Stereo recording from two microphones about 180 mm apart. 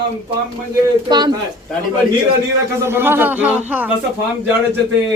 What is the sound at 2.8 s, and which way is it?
A woman's voice, 10° right (ahead or behind).